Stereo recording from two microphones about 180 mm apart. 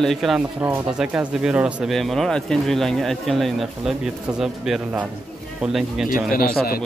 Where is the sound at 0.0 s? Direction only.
Centre (ahead or behind).